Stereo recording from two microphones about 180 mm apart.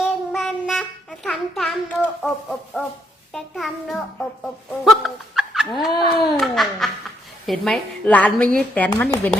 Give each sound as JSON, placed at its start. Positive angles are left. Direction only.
{"t": 0.0, "sound": "child singing", "side_deg": 0}
{"t": 2.2, "sound": "a child's voice", "side_deg": 0}
{"t": 4.9, "sound": "laughter", "side_deg": 0}
{"t": 5.8, "sound": "a sound", "side_deg": 0}
{"t": 7.4, "sound": "a woman's voice", "side_deg": 0}
{"t": 9.0, "sound": "a woman's voice", "side_deg": 20}